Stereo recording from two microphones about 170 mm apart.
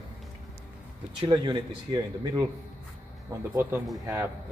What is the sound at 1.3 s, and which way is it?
Speech, 25° right (ahead or behind).